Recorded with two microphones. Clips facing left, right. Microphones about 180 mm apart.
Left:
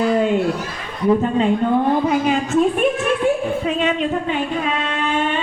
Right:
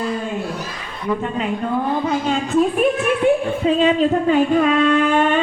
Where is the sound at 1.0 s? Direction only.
30° left (ahead or behind).